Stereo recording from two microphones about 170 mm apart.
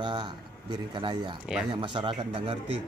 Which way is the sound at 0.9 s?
25° right (ahead or behind).